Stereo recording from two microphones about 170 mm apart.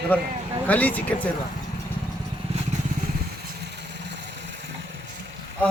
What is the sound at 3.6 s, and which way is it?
Vehicle, 80° right.